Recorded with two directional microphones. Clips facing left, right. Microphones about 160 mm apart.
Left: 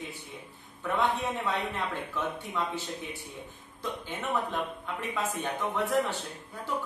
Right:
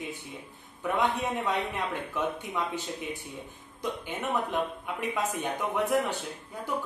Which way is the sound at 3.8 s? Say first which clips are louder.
Right 2 dB; 15° right (ahead or behind).